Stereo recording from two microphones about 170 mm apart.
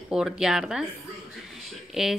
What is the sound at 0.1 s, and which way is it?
Speech, 5° right (ahead or behind).